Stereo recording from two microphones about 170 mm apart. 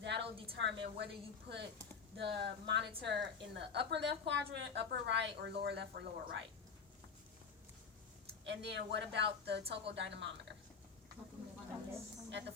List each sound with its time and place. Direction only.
0.0 s a sound: 90° right
0.5 s a woman's voice: 90° right
8.4 s a woman's voice: 90° right
12.3 s a woman's voice: 90° right